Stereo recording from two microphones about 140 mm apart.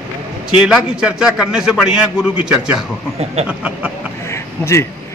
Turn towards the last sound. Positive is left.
turn(degrees=20)  # may be behind; listen again after turning